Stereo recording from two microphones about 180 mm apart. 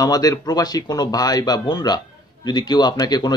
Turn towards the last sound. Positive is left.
turn(degrees=20)  # may be behind; listen again after turning